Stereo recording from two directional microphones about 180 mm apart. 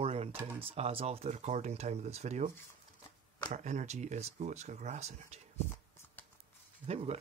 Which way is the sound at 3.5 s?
40° right (ahead or behind).